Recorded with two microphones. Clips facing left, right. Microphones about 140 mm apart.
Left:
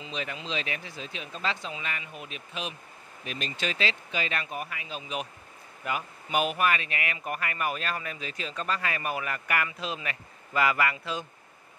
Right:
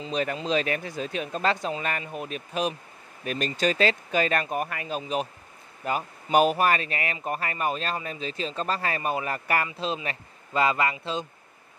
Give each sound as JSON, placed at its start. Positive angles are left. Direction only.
{"t": 0.0, "sound": "speech", "side_deg": -45}